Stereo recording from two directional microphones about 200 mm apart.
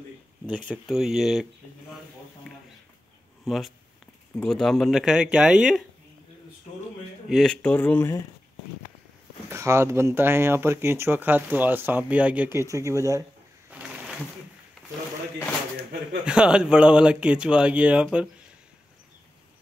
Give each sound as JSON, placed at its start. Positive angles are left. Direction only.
{"t": 0.7, "sound": "speech", "side_deg": 0}
{"t": 3.4, "sound": "speech", "side_deg": 0}
{"t": 7.2, "sound": "speech", "side_deg": 0}
{"t": 9.5, "sound": "speech", "side_deg": -15}
{"t": 13.7, "sound": "a sound", "side_deg": -5}
{"t": 16.3, "sound": "speech", "side_deg": -5}